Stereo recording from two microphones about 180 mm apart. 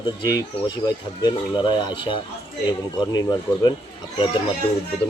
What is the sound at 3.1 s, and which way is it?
Speech, 20° left (ahead or behind).